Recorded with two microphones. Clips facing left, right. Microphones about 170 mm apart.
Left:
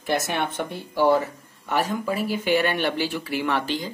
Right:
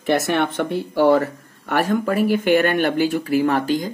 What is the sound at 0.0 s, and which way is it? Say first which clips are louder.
Speech: right 6 dB; 65° right (ahead or behind).